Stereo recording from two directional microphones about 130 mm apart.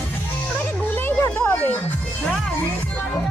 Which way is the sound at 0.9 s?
15° left (ahead or behind).